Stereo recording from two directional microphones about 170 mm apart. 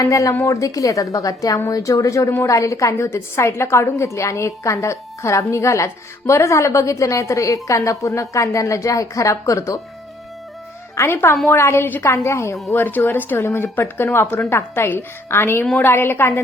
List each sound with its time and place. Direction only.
0.0 s a woman's voice: 20° left (ahead or behind)
10.9 s a woman's voice: 15° left (ahead or behind)